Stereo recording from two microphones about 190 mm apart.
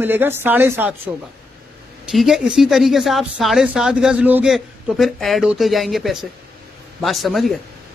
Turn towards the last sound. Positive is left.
turn(degrees=0)  # may be behind; listen again after turning